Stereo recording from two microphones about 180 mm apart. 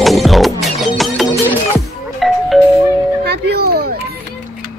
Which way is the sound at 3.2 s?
65° right (ahead or behind).